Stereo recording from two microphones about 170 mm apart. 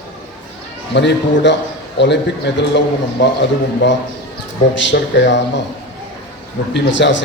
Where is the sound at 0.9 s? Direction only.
90° left.